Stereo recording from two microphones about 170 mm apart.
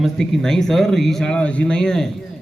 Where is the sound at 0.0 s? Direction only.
Centre (ahead or behind).